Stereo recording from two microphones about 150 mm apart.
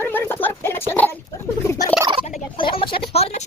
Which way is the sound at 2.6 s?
35° left (ahead or behind).